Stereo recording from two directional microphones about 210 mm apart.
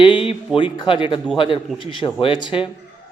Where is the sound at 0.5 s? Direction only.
25° left (ahead or behind).